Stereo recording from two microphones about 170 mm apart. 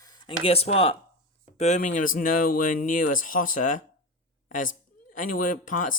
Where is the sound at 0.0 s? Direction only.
25° left (ahead or behind).